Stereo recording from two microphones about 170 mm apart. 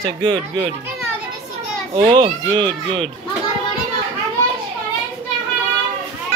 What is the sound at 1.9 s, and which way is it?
Speech, 30° right (ahead or behind).